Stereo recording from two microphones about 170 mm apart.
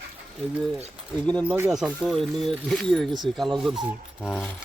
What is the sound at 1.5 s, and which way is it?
Speech, 10° right (ahead or behind).